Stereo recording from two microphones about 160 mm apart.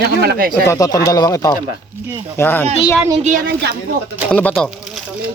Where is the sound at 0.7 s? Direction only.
20° left (ahead or behind).